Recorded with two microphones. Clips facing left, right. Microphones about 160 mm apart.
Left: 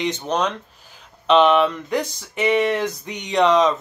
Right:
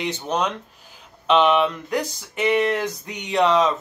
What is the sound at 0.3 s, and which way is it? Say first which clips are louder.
Speech: left 1 dB; 5° right (ahead or behind).